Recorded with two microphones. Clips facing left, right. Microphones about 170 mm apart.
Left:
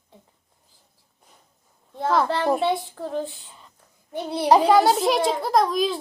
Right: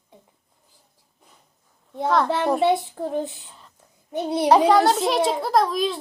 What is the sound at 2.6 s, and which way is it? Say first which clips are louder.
A child's voice: right 4 dB; 20° right (ahead or behind).